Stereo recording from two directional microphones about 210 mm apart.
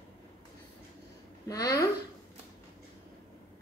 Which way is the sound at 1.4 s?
15° left (ahead or behind).